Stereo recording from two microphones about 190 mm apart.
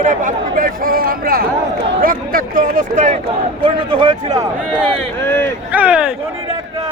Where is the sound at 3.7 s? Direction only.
25° right (ahead or behind).